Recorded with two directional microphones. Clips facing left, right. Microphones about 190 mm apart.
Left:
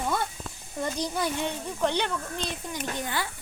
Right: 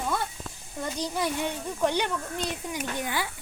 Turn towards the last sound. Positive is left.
turn(degrees=-10)  # may be behind; listen again after turning